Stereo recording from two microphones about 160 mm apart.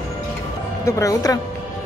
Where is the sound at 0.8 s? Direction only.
20° left (ahead or behind).